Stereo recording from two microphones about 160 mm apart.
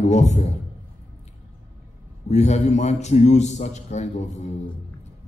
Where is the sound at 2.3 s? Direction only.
45° left (ahead or behind).